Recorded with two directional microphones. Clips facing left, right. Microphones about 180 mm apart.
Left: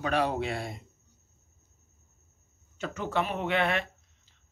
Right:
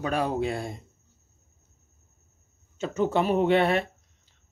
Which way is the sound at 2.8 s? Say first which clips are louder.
Right 6 dB; 30° right (ahead or behind).